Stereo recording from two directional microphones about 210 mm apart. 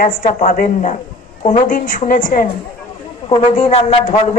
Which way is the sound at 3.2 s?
25° left (ahead or behind).